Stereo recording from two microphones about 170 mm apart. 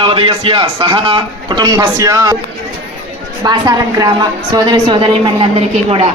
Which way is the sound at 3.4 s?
25° right (ahead or behind).